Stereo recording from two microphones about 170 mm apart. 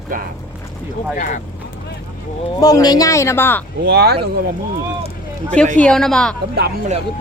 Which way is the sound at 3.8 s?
70° right (ahead or behind).